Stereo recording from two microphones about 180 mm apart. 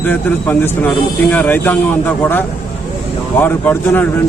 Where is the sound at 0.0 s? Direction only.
10° left (ahead or behind).